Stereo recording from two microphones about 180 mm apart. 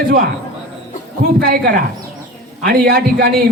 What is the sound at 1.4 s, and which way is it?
A man's voice, 55° right (ahead or behind).